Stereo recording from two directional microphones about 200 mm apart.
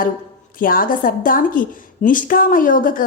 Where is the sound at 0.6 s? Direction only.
45° left (ahead or behind).